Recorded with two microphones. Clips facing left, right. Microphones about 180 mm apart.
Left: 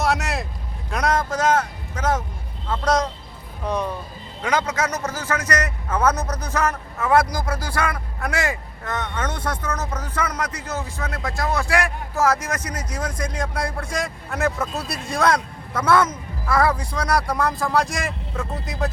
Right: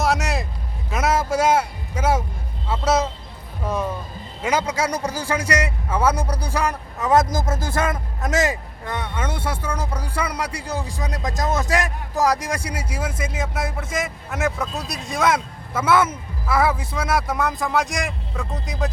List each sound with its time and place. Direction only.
0.0 s vehicle: centre (ahead or behind)
0.9 s a sound: 5° right (ahead or behind)
2.6 s speech: 5° right (ahead or behind)
3.6 s music: 5° right (ahead or behind)
4.4 s a man's voice: 10° right (ahead or behind)